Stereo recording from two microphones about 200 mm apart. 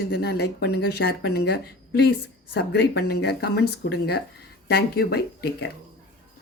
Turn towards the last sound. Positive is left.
turn(degrees=55)  # may be behind; listen again after turning